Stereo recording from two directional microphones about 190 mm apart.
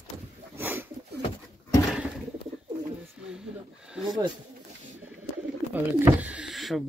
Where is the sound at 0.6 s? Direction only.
10° right (ahead or behind).